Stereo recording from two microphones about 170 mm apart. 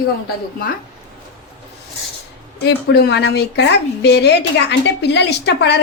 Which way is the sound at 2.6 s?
75° left (ahead or behind).